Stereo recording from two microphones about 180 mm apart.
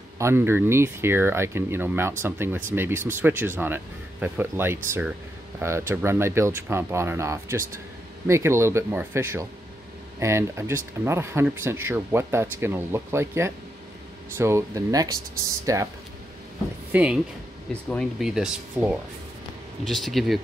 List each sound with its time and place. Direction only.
0.2 s speech: 15° right (ahead or behind)
16.9 s speech: 5° right (ahead or behind)